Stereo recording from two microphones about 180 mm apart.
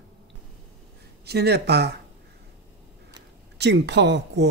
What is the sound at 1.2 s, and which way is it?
Speech, 65° right (ahead or behind).